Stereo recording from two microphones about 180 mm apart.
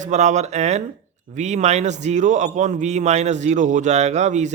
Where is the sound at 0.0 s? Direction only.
40° right (ahead or behind).